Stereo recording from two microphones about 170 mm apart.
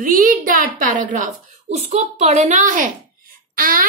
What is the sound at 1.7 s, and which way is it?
A woman's voice, 40° right (ahead or behind).